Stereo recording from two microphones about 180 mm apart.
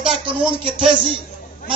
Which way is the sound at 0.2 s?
25° right (ahead or behind).